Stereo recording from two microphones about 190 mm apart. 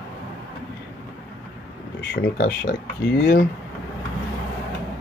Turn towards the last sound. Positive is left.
turn(degrees=60)  # may be behind; listen again after turning